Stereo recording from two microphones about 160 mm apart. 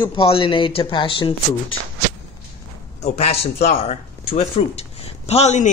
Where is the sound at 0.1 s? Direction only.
35° left (ahead or behind).